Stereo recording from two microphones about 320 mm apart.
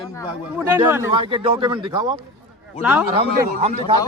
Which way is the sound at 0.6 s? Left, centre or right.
Centre.